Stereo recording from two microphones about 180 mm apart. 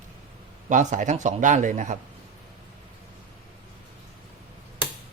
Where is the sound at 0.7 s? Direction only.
45° right (ahead or behind).